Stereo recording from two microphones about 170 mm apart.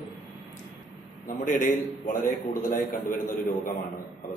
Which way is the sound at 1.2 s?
50° left (ahead or behind).